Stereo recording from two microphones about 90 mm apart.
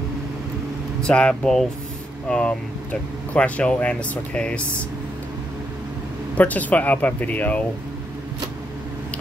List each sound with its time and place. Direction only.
1.0 s speech: 10° left (ahead or behind)
6.3 s speech: 15° left (ahead or behind)